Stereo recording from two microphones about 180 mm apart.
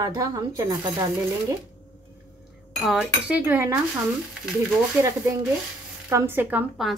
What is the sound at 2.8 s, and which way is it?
Speech, 5° right (ahead or behind).